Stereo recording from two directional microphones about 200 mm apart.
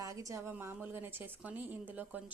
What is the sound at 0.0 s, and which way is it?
A woman's voice, 15° right (ahead or behind).